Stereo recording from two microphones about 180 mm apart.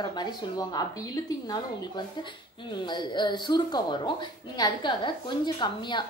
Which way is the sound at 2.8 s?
25° left (ahead or behind).